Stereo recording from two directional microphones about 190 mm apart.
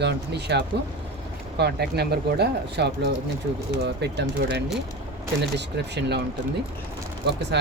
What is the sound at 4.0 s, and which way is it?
Speech, 60° right (ahead or behind).